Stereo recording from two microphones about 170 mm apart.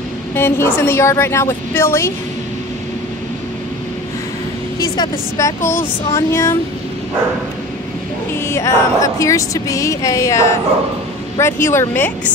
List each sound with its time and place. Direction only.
0.3 s speech: 15° left (ahead or behind)
4.7 s a woman's voice: 20° left (ahead or behind)
8.5 s speech: 15° left (ahead or behind)